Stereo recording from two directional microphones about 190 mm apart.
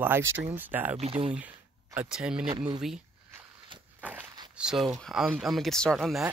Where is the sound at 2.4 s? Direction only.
25° right (ahead or behind).